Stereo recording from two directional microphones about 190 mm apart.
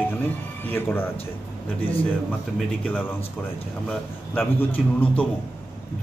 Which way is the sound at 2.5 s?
5° left (ahead or behind).